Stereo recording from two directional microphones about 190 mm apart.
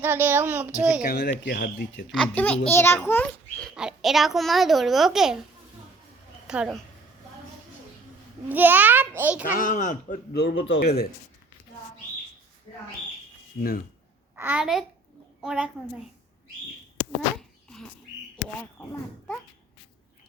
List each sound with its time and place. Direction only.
0.0 s a child's voice: 10° right (ahead or behind)
1.1 s speech: 65° left (ahead or behind)
2.1 s a child's voice: 5° left (ahead or behind)
3.8 s a child's voice: centre (ahead or behind)
6.5 s a child's voice: 5° right (ahead or behind)
8.4 s a child's voice: 10° right (ahead or behind)
9.4 s speech: 45° left (ahead or behind)
10.3 s a man's voice: 65° left (ahead or behind)
10.8 s speech: 55° left (ahead or behind)
13.6 s speech: 50° left (ahead or behind)
14.3 s a child's voice: 10° right (ahead or behind)